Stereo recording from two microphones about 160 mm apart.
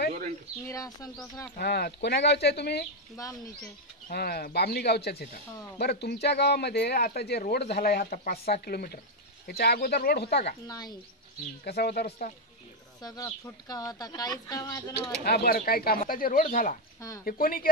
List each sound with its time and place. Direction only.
0.7 s speech: 20° left (ahead or behind)
1.6 s speech: 90° left
3.2 s speech: 20° left (ahead or behind)
4.1 s speech: 80° left
10.7 s speech: 25° left (ahead or behind)
11.6 s speech: 80° left
13.0 s speech: 25° left (ahead or behind)
15.2 s speech: 75° left (ahead or behind)